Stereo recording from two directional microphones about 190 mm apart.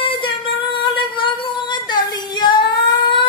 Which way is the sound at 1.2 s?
25° left (ahead or behind).